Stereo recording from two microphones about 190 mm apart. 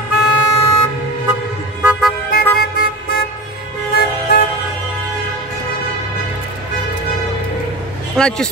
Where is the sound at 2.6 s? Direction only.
55° left (ahead or behind).